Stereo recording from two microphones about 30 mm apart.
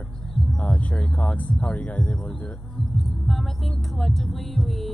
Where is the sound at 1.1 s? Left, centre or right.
Left.